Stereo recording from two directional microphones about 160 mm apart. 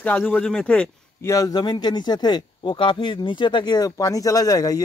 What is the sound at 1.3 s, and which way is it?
Speech, 20° left (ahead or behind).